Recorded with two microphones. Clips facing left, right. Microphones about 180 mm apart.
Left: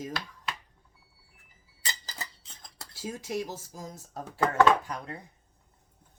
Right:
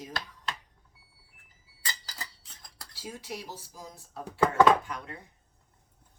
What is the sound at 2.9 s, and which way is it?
Speech, 45° left (ahead or behind).